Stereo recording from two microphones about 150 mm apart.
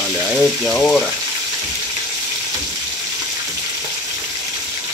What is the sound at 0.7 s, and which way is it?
Speech, 10° left (ahead or behind).